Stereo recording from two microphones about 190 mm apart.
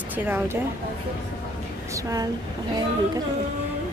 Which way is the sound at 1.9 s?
20° right (ahead or behind).